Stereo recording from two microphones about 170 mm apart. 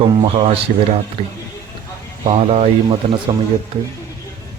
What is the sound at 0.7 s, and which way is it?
Speech, 45° right (ahead or behind).